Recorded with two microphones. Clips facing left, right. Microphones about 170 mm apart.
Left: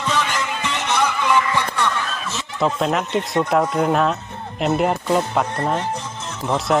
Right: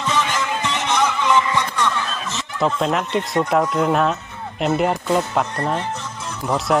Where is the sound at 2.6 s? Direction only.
Centre (ahead or behind).